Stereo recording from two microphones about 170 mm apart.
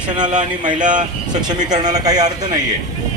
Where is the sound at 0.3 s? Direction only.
45° right (ahead or behind).